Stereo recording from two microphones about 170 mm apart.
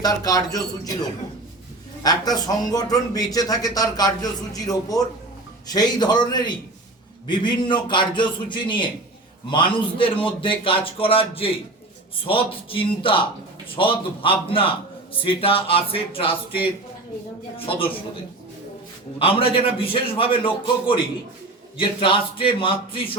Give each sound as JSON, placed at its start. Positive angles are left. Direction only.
{"t": 0.0, "sound": "a man's voice", "side_deg": 20}
{"t": 2.0, "sound": "a man's voice", "side_deg": 20}
{"t": 17.7, "sound": "a man's voice", "side_deg": 30}
{"t": 19.2, "sound": "a man's voice", "side_deg": 35}